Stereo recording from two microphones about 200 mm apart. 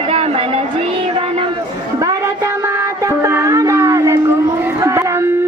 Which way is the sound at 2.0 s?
15° right (ahead or behind).